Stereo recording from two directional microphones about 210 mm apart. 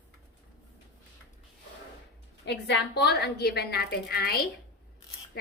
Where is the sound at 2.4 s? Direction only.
55° left (ahead or behind).